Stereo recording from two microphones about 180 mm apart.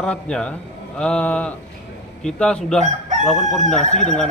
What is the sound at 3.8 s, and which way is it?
Speech, 40° left (ahead or behind).